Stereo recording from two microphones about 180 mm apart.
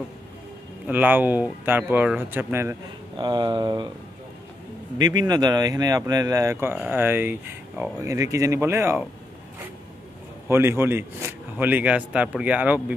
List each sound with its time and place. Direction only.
0.8 s speech: 10° right (ahead or behind)
3.3 s speech: 25° right (ahead or behind)
4.9 s speech: 25° right (ahead or behind)
10.5 s speech: 15° right (ahead or behind)